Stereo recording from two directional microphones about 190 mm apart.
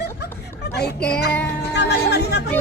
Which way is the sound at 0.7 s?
60° left (ahead or behind).